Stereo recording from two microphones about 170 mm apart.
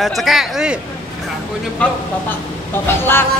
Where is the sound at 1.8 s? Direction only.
10° left (ahead or behind).